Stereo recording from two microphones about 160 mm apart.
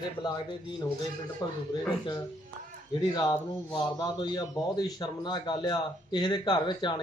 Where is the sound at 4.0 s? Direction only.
25° left (ahead or behind).